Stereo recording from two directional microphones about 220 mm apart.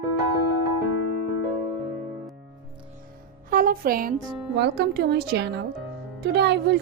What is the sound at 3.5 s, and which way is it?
A woman's voice, 40° right (ahead or behind).